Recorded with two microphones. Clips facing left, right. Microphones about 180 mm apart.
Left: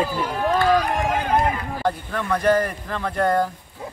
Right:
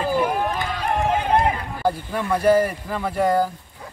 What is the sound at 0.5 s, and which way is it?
Run, 25° right (ahead or behind).